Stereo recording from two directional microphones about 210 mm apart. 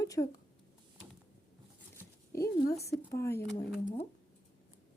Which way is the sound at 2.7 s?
15° left (ahead or behind).